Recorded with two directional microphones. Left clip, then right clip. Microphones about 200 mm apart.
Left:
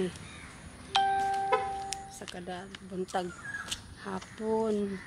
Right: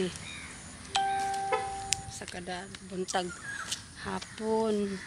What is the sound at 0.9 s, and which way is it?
Music, 20° left (ahead or behind).